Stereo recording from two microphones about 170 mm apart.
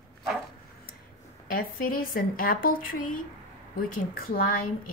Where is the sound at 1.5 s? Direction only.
55° left (ahead or behind).